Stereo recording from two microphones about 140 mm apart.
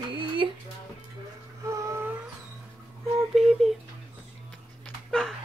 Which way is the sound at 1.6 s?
20° right (ahead or behind).